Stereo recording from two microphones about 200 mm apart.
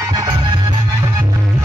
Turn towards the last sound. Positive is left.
turn(degrees=-20)  # may be behind; listen again after turning